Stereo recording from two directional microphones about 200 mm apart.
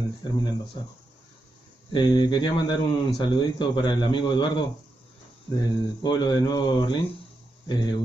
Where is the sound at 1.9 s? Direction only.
20° left (ahead or behind).